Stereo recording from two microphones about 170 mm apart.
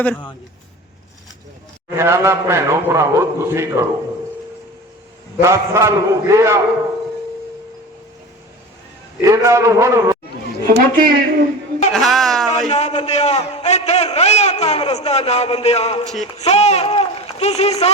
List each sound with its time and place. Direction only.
0.0 s speech: 10° left (ahead or behind)
2.0 s a man's voice: 15° right (ahead or behind)
5.4 s a man's voice: 15° right (ahead or behind)
9.2 s a man's voice: 15° right (ahead or behind)
10.7 s a man's voice: 55° right (ahead or behind)
11.9 s a man's voice: centre (ahead or behind)
12.5 s a man's voice: 40° left (ahead or behind)